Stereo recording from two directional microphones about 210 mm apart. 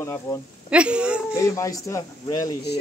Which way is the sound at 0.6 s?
5° right (ahead or behind).